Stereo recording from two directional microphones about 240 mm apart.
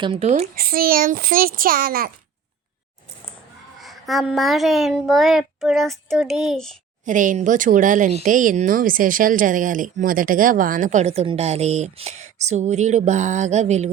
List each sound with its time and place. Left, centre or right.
0.0 s speech: right
3.8 s a child's voice: centre
7.0 s speech: right